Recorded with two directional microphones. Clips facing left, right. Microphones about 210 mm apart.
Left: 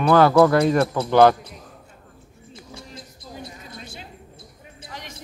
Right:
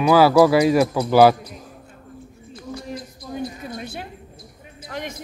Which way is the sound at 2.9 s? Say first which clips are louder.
Right 8 dB; 60° right (ahead or behind).